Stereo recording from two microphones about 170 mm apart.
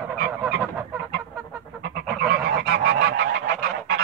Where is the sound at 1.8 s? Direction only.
70° right (ahead or behind).